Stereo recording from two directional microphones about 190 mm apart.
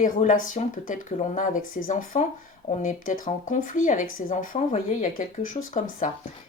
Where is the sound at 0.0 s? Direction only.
40° left (ahead or behind).